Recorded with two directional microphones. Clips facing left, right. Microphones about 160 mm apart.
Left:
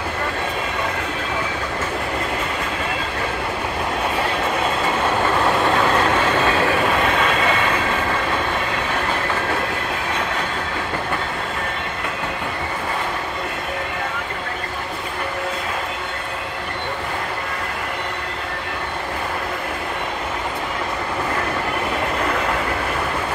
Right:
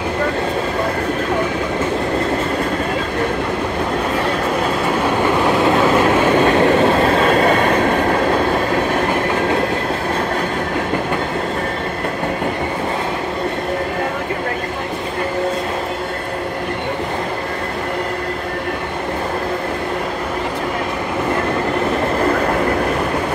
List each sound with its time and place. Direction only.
5.2 s train: 15° right (ahead or behind); by 8.2 s 50° right (ahead or behind)